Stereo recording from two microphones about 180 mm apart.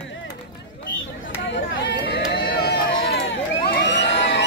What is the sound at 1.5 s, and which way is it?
Run, 75° left (ahead or behind).